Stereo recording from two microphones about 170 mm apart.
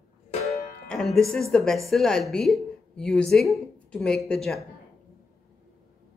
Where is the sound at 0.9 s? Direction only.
5° left (ahead or behind).